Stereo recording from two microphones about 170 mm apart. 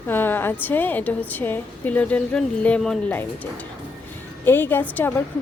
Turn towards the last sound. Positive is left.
turn(degrees=10)  # may be behind; listen again after turning